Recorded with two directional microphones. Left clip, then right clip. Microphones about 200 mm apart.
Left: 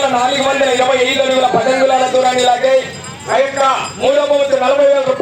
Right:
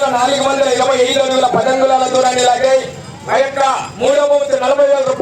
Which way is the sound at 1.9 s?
60° right (ahead or behind).